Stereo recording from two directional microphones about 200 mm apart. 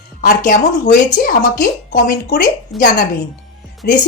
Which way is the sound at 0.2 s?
45° left (ahead or behind).